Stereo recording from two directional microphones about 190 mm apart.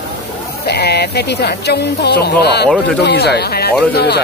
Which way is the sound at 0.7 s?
60° left (ahead or behind).